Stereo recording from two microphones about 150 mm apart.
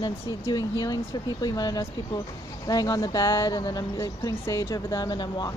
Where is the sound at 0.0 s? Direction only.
25° left (ahead or behind).